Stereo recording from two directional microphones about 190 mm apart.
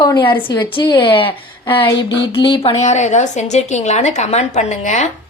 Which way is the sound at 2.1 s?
65° left (ahead or behind).